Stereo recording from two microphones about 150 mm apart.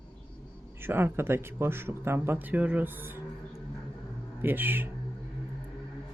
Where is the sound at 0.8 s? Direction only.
15° right (ahead or behind).